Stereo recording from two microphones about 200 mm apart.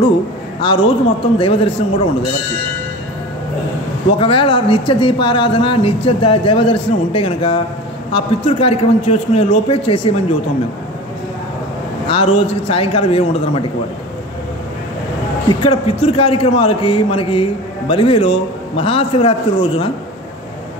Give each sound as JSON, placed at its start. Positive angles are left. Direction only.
{"t": 0.6, "sound": "speech", "side_deg": 25}
{"t": 4.2, "sound": "speech", "side_deg": 25}
{"t": 12.1, "sound": "speech", "side_deg": 30}
{"t": 15.6, "sound": "speech", "side_deg": 25}